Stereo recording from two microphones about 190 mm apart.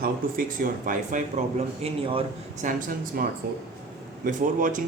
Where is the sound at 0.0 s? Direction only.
45° right (ahead or behind).